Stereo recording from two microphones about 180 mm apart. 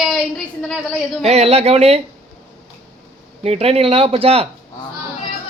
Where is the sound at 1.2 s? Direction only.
35° right (ahead or behind).